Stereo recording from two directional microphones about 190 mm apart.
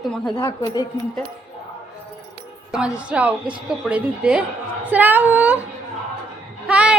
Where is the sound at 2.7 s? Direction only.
5° right (ahead or behind).